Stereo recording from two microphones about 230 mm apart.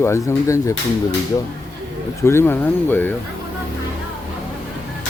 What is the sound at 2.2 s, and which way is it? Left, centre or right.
Speech, centre.